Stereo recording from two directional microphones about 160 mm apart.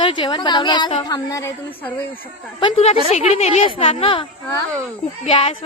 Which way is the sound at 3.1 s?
45° left (ahead or behind).